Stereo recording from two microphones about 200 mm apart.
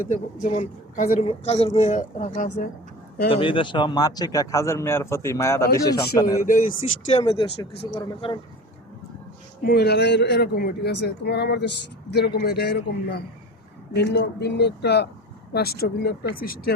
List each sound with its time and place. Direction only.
0.4 s a woman's voice: 35° left (ahead or behind)
3.2 s a man's voice: 25° left (ahead or behind)
7.1 s speech: 30° left (ahead or behind)
9.6 s speech: 55° left (ahead or behind)